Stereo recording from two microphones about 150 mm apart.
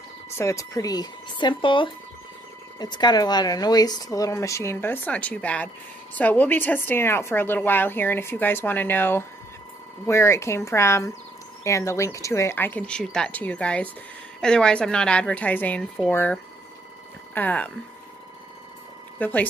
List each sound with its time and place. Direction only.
0.4 s a woman's voice: 20° left (ahead or behind)
19.1 s speech: 10° left (ahead or behind)